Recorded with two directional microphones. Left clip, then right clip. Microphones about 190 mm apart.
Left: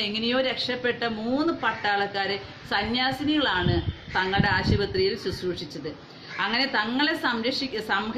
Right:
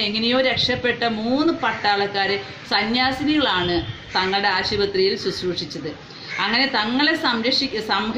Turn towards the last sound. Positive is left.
turn(degrees=-10)  # may be behind; listen again after turning